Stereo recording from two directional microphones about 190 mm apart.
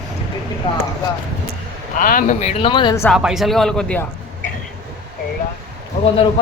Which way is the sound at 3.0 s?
Centre (ahead or behind).